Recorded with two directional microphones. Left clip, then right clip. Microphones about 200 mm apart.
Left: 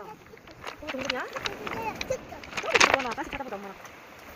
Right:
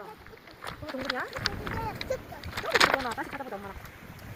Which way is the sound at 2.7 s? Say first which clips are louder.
Left 2 dB; centre (ahead or behind).